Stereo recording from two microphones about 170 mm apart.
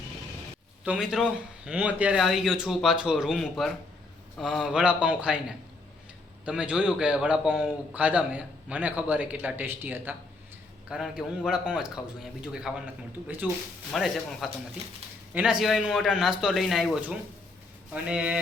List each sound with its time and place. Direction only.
0.9 s a man's voice: 5° right (ahead or behind)